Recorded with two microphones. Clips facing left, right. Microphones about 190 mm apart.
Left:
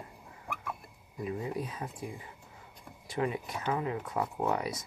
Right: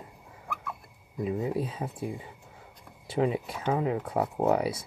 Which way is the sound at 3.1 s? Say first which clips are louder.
Right 5 dB; 30° right (ahead or behind).